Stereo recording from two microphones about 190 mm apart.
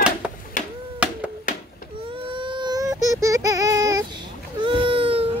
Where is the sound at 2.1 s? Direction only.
30° right (ahead or behind).